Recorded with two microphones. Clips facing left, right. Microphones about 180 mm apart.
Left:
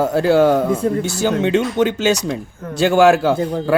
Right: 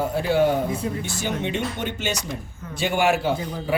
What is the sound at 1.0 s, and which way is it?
Speech, 90° left.